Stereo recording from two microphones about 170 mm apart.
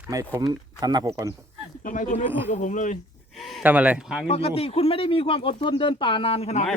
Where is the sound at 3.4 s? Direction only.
5° right (ahead or behind).